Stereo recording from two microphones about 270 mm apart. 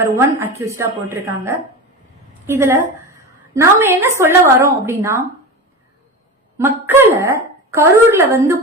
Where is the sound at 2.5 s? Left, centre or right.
Centre.